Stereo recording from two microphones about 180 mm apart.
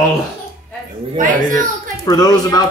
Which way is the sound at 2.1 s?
20° left (ahead or behind).